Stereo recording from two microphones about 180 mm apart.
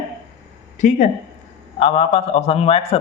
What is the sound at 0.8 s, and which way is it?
A man's voice, 40° left (ahead or behind).